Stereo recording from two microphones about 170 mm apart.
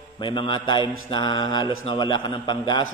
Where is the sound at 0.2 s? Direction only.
30° left (ahead or behind).